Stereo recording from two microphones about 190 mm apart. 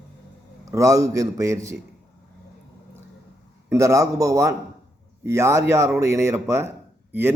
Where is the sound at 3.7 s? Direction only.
15° right (ahead or behind).